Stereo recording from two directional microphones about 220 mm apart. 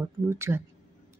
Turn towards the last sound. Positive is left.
turn(degrees=-10)  # may be behind; listen again after turning